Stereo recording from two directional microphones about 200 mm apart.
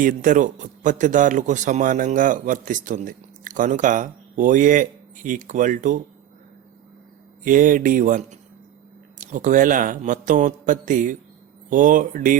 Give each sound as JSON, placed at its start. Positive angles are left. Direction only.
{"t": 0.0, "sound": "a man's voice", "side_deg": -40}
{"t": 7.4, "sound": "a man's voice", "side_deg": -40}